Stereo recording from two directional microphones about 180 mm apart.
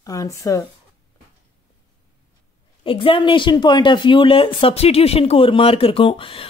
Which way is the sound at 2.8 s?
30° left (ahead or behind).